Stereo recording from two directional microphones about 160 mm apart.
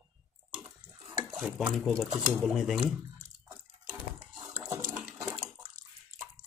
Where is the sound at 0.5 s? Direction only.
25° right (ahead or behind).